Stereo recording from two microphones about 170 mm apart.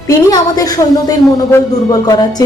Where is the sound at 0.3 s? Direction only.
20° left (ahead or behind).